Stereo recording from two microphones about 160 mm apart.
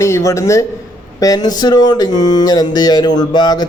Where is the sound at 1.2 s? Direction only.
25° left (ahead or behind).